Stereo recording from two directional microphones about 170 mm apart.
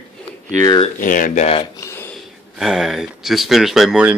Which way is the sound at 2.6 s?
Centre (ahead or behind).